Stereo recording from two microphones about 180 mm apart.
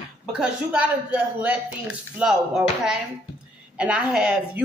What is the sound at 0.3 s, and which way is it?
A woman's voice, 5° right (ahead or behind).